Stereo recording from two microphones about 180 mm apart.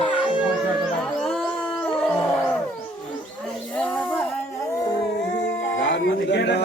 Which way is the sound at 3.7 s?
5° left (ahead or behind).